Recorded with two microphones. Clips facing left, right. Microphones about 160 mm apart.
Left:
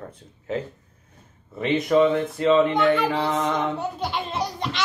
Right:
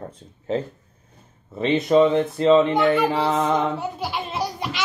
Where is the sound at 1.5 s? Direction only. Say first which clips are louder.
Right 2 dB; 25° right (ahead or behind).